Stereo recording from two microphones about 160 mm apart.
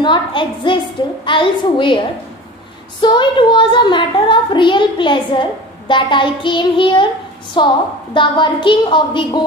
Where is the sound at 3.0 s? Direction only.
30° left (ahead or behind).